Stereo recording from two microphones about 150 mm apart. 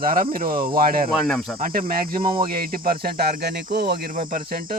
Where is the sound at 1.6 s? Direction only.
70° right (ahead or behind).